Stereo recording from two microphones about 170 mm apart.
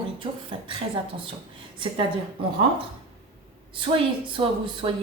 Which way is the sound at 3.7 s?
30° right (ahead or behind).